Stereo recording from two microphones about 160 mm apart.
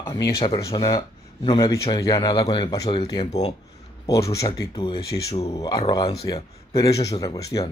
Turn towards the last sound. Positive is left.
turn(degrees=20)  # may be behind; listen again after turning